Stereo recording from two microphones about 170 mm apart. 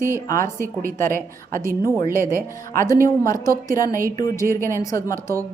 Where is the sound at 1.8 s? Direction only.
20° left (ahead or behind).